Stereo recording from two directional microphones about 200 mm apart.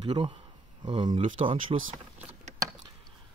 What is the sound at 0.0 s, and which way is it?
Speech, 25° right (ahead or behind).